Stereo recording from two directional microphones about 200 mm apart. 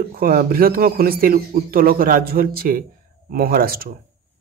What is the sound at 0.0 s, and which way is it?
A man's voice, 50° right (ahead or behind).